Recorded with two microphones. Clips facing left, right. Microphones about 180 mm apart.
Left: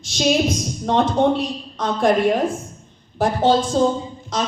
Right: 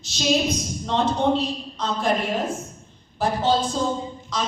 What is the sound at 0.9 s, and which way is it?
Speech, 60° left (ahead or behind).